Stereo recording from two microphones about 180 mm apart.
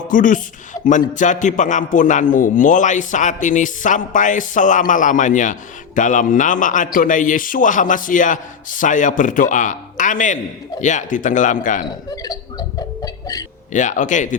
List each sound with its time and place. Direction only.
0.1 s speech: 45° left (ahead or behind)
12.1 s a sound: 20° left (ahead or behind)
13.7 s speech: 45° left (ahead or behind)